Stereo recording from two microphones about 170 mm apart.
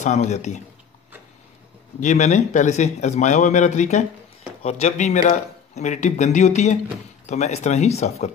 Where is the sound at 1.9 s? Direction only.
45° left (ahead or behind).